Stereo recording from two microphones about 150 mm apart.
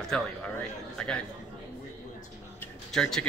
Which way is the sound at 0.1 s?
5° left (ahead or behind).